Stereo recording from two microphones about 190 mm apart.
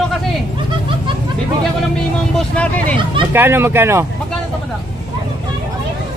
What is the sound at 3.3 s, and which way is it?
Speech, 10° right (ahead or behind).